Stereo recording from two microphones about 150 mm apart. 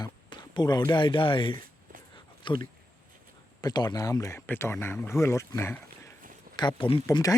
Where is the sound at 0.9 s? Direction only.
30° left (ahead or behind).